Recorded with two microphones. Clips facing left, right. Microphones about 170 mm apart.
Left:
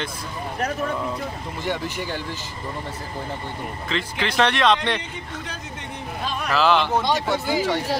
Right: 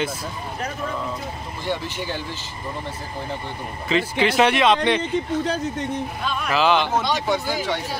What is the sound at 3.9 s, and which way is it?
Speech, 5° right (ahead or behind).